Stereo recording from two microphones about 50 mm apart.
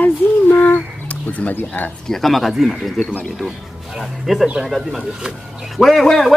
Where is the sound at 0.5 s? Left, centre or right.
Left.